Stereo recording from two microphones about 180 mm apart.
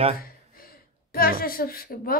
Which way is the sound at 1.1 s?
55° left (ahead or behind).